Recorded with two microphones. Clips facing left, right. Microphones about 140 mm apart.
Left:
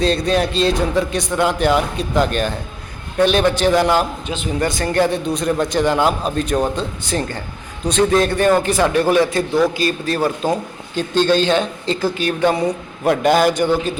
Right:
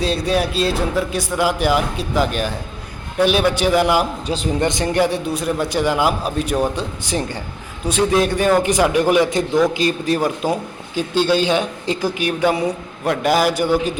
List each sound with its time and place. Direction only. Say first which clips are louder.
0.0 s a man's voice: left 2 dB; 10° right (ahead or behind)
4.3 s speech: right 3 dB; 35° right (ahead or behind)
4.6 s a man's voice: left 1 dB; 20° right (ahead or behind)